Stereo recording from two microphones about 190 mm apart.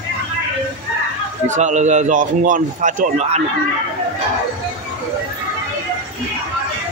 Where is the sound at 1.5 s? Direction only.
40° right (ahead or behind).